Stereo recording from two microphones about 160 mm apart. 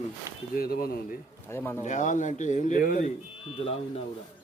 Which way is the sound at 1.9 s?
50° left (ahead or behind).